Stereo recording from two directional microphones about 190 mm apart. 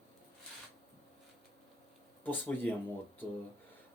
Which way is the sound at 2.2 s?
10° left (ahead or behind).